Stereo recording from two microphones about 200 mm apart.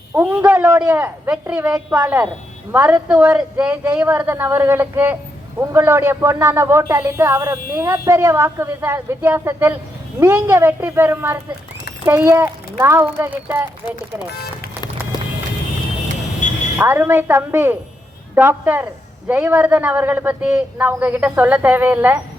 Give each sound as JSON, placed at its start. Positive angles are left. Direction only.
{"t": 0.1, "sound": "speech", "side_deg": -10}
{"t": 15.1, "sound": "music", "side_deg": 20}
{"t": 16.4, "sound": "a sound", "side_deg": 40}
{"t": 16.7, "sound": "speech", "side_deg": -10}